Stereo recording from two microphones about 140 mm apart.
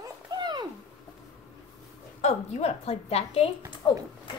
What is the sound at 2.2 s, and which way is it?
A woman's voice, 55° left (ahead or behind).